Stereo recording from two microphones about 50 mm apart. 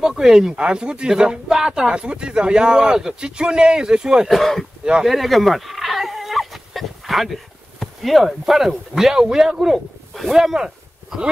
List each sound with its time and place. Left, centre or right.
0.0 s speech: centre
4.3 s speech: centre
5.0 s goat: centre
7.8 s speech: centre